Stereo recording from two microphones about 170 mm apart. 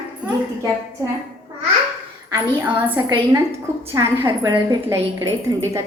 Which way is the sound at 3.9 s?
20° right (ahead or behind).